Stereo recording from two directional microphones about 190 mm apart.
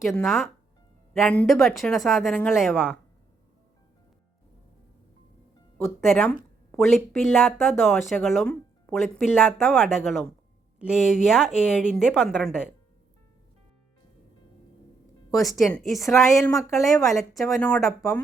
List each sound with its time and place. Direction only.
0.1 s speech: centre (ahead or behind)
2.6 s speech: 5° right (ahead or behind)
5.7 s speech: centre (ahead or behind)
15.7 s speech: centre (ahead or behind)
16.4 s speech: 15° left (ahead or behind)
17.2 s speech: centre (ahead or behind)